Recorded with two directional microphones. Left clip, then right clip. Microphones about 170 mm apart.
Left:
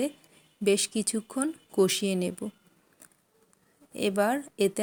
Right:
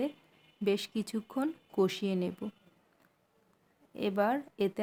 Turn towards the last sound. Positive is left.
turn(degrees=20)  # may be behind; listen again after turning